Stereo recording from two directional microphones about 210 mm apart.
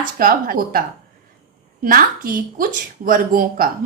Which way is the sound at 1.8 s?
40° right (ahead or behind).